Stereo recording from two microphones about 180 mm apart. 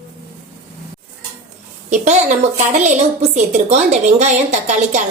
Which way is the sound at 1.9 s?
40° right (ahead or behind).